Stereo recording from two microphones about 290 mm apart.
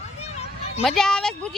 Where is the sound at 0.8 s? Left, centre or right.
Centre.